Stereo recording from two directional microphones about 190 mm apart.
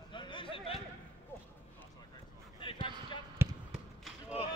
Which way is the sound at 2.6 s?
25° left (ahead or behind).